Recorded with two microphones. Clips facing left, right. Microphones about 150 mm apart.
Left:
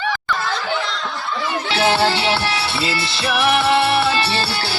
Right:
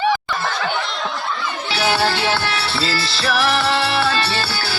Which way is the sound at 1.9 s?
20° left (ahead or behind).